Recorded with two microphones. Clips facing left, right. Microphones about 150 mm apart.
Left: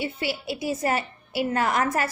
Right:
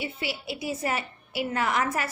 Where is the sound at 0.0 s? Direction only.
40° left (ahead or behind).